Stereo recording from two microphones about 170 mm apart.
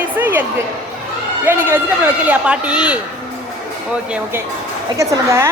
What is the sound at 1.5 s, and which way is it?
A woman's voice, 10° right (ahead or behind).